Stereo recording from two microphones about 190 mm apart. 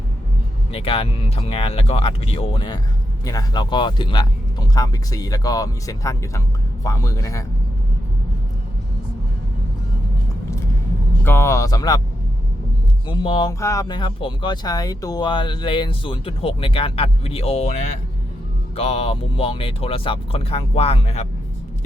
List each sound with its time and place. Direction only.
0.7 s speech: 30° left (ahead or behind)
11.2 s speech: 10° left (ahead or behind)
13.1 s speech: 25° left (ahead or behind)
18.8 s speech: 30° left (ahead or behind)